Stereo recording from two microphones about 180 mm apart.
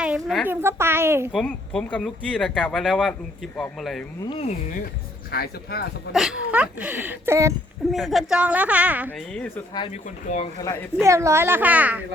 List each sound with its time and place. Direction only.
0.0 s a child's voice: 5° right (ahead or behind)
1.3 s speech: centre (ahead or behind)
4.2 s speech: 30° left (ahead or behind)
5.3 s speech: 60° left (ahead or behind)
6.1 s speech: 5° right (ahead or behind)
7.9 s speech: centre (ahead or behind)
9.3 s speech: 5° left (ahead or behind)
9.9 s speech: 40° left (ahead or behind)
11.0 s speech: 15° right (ahead or behind)